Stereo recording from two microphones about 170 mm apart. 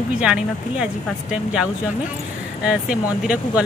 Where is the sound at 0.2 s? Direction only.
5° right (ahead or behind).